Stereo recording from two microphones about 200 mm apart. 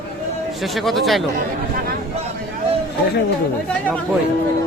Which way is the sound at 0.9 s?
Centre (ahead or behind).